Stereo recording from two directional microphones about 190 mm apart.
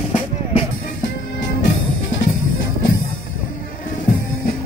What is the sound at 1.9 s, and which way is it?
Music, 90° left.